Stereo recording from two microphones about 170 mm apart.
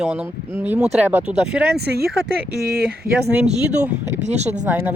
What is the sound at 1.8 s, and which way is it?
Speech, 70° right (ahead or behind).